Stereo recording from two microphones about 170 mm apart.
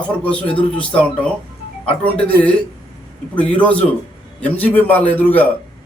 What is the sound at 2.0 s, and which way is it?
A man's voice, 10° left (ahead or behind).